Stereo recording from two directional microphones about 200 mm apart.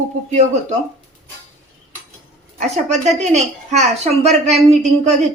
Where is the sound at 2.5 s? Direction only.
35° right (ahead or behind).